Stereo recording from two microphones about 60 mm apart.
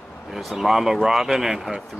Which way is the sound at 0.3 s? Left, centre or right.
Centre.